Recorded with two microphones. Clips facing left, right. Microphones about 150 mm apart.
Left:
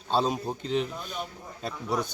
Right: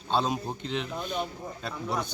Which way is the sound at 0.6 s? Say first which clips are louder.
Left 4 dB; 40° left (ahead or behind).